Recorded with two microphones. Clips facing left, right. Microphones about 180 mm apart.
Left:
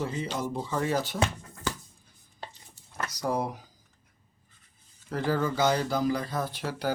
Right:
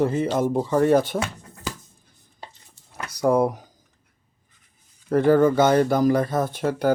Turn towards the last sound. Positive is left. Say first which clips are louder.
# right 9 dB
turn(degrees=-50)  # may be behind; listen again after turning